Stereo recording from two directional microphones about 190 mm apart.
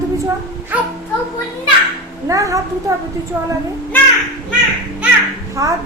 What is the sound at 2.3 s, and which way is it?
Speech, 15° right (ahead or behind).